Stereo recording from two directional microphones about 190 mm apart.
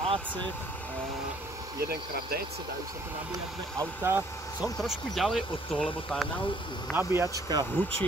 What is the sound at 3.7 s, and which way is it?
Speech, 15° right (ahead or behind).